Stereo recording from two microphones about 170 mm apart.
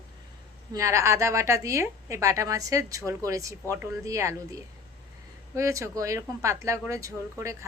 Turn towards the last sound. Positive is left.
turn(degrees=-15)  # may be behind; listen again after turning